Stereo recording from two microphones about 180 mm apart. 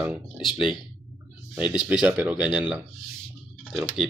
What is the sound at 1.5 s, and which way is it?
Speech, 5° right (ahead or behind).